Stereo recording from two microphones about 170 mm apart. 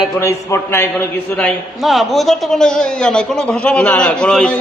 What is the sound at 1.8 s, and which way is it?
A man's voice, centre (ahead or behind).